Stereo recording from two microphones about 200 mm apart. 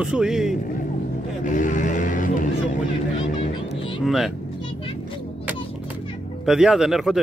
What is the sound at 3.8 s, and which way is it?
Music, 25° left (ahead or behind).